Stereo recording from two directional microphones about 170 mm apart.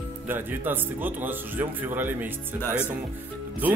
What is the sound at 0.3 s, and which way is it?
Speech, 10° right (ahead or behind).